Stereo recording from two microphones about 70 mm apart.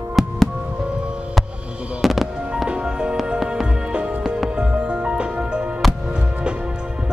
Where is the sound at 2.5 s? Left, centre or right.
Centre.